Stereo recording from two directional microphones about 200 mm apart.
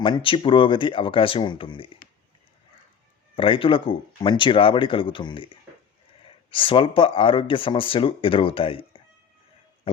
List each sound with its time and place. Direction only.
0.0 s speech: 25° left (ahead or behind)
3.3 s speech: 25° left (ahead or behind)
9.9 s a sound: 25° left (ahead or behind)